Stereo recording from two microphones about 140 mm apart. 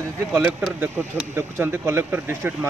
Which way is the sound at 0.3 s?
10° right (ahead or behind).